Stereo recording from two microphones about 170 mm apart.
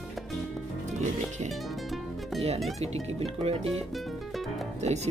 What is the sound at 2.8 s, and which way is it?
Speech, 35° right (ahead or behind).